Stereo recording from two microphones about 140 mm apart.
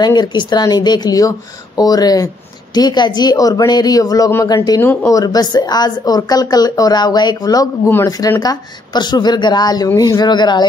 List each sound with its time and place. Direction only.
0.0 s a woman's voice: 30° left (ahead or behind)